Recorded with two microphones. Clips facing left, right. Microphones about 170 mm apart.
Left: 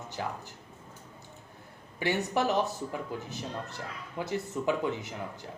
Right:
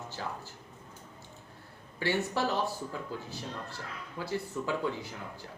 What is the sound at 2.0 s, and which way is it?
Speech, 20° left (ahead or behind).